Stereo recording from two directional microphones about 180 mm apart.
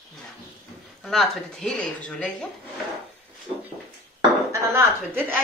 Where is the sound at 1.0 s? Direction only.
5° left (ahead or behind).